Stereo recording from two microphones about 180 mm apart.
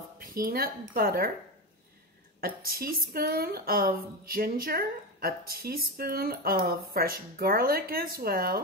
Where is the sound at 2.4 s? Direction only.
55° right (ahead or behind).